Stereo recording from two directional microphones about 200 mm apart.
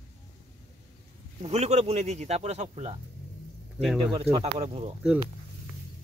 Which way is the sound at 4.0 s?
30° right (ahead or behind).